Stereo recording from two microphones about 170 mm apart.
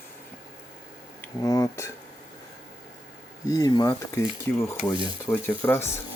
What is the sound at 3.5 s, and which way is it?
Speech, 20° left (ahead or behind).